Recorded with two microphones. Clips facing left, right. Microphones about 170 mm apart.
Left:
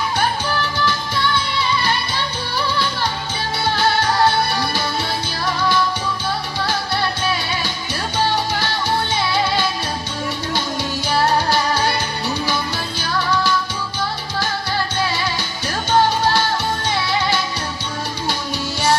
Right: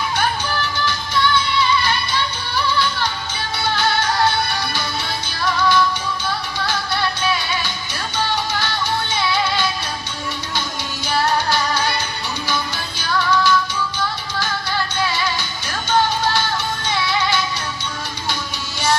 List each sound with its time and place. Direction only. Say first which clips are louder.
0.9 s music: right 1 dB; 35° left (ahead or behind)
3.8 s music: left 2 dB; 35° left (ahead or behind)
9.3 s music: left 1 dB; 40° left (ahead or behind)
11.1 s music: left 1 dB; 35° left (ahead or behind)
13.0 s music: right 2 dB; 35° left (ahead or behind)
15.0 s music: even; 35° left (ahead or behind)